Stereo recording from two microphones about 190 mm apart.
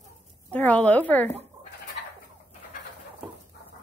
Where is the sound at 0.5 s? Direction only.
5° left (ahead or behind).